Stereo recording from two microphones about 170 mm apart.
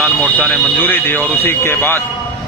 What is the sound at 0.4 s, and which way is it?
Speech, 10° left (ahead or behind).